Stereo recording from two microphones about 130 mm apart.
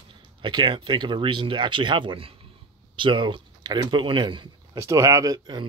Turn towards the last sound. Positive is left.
turn(degrees=-30)  # may be behind; listen again after turning